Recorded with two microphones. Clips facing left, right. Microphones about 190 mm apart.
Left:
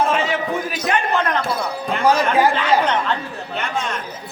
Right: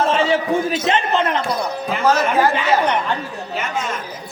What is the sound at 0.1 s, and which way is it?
A man's voice, 30° right (ahead or behind).